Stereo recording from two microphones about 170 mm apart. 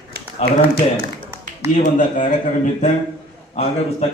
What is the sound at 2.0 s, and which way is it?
A man's voice, 50° left (ahead or behind).